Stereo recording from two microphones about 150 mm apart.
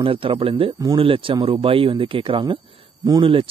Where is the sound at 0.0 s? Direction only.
35° right (ahead or behind).